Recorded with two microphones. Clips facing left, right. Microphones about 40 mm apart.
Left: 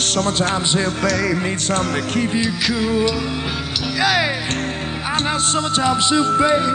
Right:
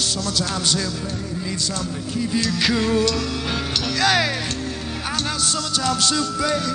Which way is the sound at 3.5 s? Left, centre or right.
Centre.